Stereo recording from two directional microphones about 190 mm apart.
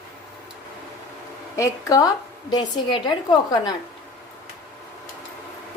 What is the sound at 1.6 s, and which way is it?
A woman's voice, 20° left (ahead or behind).